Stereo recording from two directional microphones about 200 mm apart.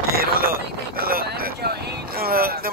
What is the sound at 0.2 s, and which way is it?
Speech, 50° right (ahead or behind).